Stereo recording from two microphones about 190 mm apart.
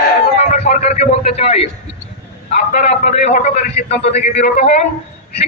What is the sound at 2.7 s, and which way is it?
Speech, 35° left (ahead or behind).